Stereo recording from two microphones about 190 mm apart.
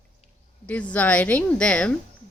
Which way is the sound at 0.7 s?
10° left (ahead or behind).